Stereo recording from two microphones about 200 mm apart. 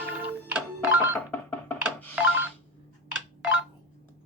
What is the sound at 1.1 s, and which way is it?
Music, 10° left (ahead or behind).